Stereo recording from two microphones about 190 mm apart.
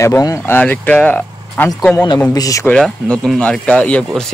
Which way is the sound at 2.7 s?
5° left (ahead or behind).